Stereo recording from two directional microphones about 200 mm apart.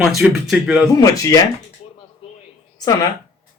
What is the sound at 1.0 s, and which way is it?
Speech, 15° left (ahead or behind).